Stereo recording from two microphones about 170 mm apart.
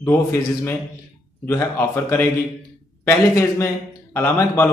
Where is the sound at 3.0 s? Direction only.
15° left (ahead or behind).